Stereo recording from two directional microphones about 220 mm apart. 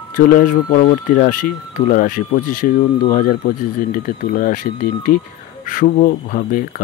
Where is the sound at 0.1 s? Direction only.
40° left (ahead or behind).